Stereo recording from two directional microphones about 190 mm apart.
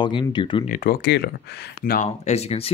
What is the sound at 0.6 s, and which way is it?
Speech, 50° left (ahead or behind).